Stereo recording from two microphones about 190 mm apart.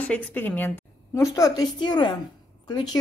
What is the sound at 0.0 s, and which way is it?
A woman's voice, 5° left (ahead or behind).